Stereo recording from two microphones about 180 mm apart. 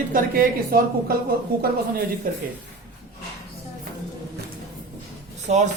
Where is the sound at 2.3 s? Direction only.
50° right (ahead or behind).